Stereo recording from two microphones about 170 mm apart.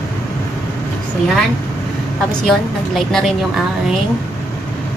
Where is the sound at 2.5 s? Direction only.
Centre (ahead or behind).